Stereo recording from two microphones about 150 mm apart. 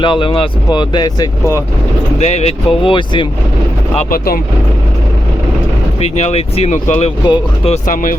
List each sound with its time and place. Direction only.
0.0 s speech: 35° left (ahead or behind)
2.1 s speech: 45° left (ahead or behind)
6.0 s speech: 45° left (ahead or behind)
7.3 s speech: 40° left (ahead or behind)